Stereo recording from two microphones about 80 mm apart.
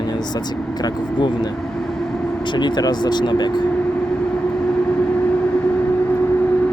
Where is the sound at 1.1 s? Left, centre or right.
Left.